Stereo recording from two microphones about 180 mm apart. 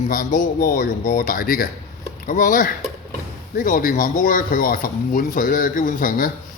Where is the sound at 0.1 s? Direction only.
50° left (ahead or behind).